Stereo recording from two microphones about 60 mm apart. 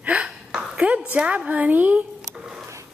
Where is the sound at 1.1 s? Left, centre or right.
Right.